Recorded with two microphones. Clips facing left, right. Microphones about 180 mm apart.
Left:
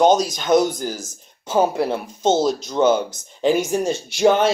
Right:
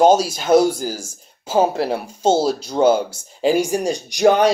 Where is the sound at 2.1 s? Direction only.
10° right (ahead or behind).